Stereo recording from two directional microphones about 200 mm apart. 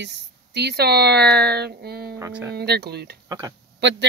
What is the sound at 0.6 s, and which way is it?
Speech, 55° right (ahead or behind).